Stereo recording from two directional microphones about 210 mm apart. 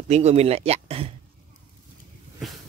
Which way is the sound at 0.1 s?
30° right (ahead or behind).